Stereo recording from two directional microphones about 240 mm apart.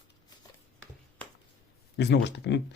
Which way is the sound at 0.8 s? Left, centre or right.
Centre.